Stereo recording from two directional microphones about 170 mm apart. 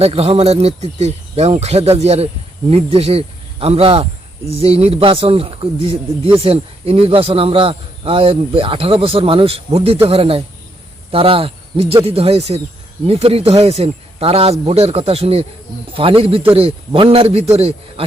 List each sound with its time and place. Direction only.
0.0 s speech: 35° right (ahead or behind)